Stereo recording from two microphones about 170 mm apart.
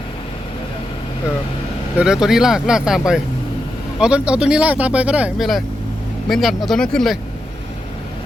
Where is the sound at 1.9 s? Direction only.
5° right (ahead or behind).